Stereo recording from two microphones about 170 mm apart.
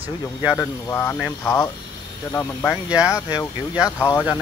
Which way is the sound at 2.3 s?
10° left (ahead or behind).